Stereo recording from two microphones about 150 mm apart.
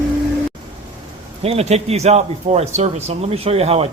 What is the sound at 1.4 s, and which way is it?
A man's voice, 45° right (ahead or behind).